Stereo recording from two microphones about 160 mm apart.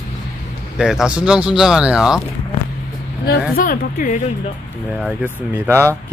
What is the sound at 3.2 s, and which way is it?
Speech, 70° left (ahead or behind).